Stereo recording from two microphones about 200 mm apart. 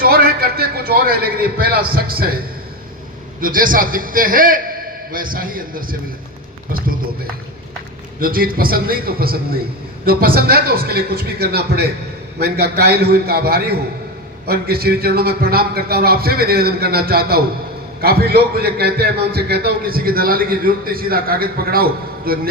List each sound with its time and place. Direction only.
0.0 s a man's voice: 50° right (ahead or behind)
3.4 s a man's voice: 45° right (ahead or behind)
8.2 s a man's voice: 45° right (ahead or behind)